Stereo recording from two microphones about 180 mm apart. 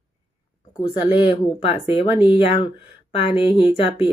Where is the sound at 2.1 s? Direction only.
5° right (ahead or behind).